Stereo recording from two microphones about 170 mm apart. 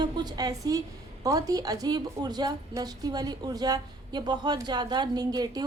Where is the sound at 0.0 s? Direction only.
20° right (ahead or behind).